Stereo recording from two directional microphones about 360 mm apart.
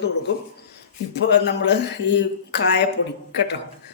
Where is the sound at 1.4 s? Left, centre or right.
Left.